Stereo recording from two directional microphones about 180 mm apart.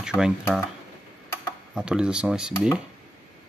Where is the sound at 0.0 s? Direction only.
5° right (ahead or behind).